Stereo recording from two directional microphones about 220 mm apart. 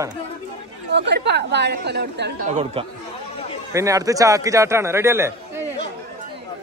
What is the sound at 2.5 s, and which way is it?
Speech, 30° right (ahead or behind).